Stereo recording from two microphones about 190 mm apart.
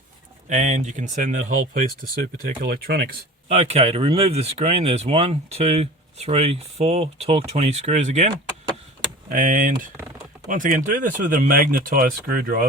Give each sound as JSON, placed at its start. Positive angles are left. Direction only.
{"t": 0.4, "sound": "speech", "side_deg": -40}
{"t": 3.5, "sound": "speech", "side_deg": -35}
{"t": 9.3, "sound": "speech", "side_deg": -40}